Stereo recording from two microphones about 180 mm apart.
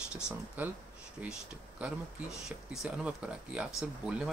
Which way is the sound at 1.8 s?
5° right (ahead or behind).